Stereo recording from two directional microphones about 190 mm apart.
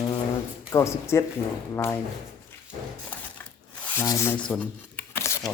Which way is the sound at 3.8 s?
15° left (ahead or behind).